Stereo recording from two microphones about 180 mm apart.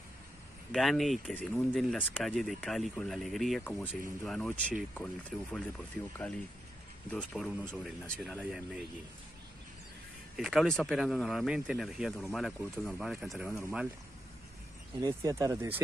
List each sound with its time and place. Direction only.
0.7 s speech: centre (ahead or behind)
7.2 s speech: centre (ahead or behind)
10.3 s speech: centre (ahead or behind)
15.0 s speech: 20° right (ahead or behind)